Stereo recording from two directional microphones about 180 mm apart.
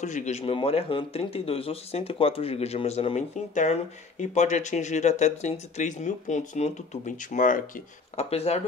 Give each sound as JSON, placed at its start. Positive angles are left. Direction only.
{"t": 0.0, "sound": "speech", "side_deg": 40}
{"t": 8.2, "sound": "speech", "side_deg": 35}